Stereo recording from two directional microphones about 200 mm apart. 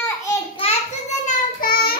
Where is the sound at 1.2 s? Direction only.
45° left (ahead or behind).